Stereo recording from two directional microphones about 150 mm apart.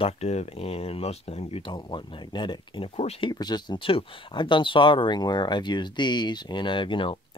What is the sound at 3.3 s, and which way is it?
Speech, 30° left (ahead or behind).